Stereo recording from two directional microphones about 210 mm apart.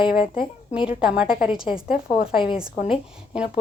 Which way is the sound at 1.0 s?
5° right (ahead or behind).